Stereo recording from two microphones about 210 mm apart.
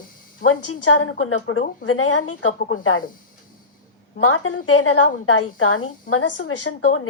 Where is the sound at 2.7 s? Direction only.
75° left (ahead or behind).